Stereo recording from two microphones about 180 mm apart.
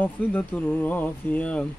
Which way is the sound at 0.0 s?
10° left (ahead or behind).